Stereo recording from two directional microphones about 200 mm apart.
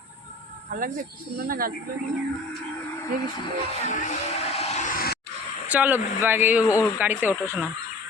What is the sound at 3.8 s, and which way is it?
Music, 40° left (ahead or behind).